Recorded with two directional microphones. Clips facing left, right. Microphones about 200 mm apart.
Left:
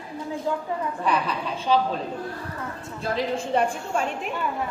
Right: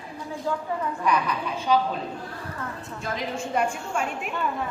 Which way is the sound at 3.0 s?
35° left (ahead or behind).